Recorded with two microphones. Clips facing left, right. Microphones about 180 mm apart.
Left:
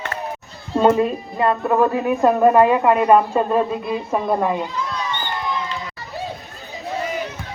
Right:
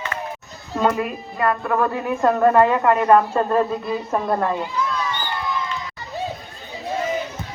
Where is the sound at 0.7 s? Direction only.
30° left (ahead or behind).